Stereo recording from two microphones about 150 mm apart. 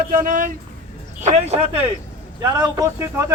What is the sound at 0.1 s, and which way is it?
Speech, 65° right (ahead or behind).